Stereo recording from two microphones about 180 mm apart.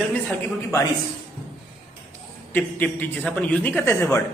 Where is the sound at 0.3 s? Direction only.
15° left (ahead or behind).